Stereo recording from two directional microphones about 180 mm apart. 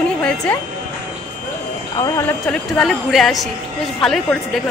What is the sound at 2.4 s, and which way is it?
A woman's voice, 5° left (ahead or behind).